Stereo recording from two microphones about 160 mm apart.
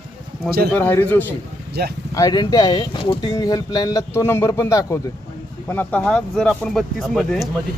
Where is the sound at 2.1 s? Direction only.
25° left (ahead or behind); by 7.5 s centre (ahead or behind).